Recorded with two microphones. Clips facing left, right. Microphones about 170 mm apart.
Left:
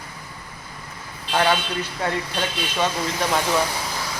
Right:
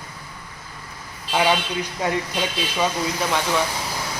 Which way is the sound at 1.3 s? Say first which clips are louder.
Even; 10° right (ahead or behind).